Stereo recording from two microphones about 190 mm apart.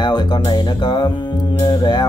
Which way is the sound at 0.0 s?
25° left (ahead or behind).